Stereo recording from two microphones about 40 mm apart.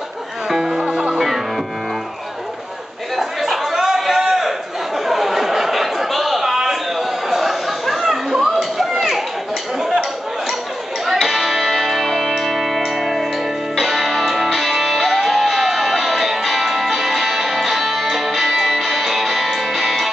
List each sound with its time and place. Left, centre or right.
0.5 s music: centre
0.8 s music: right
3.2 s a sound: centre
11.1 s music: centre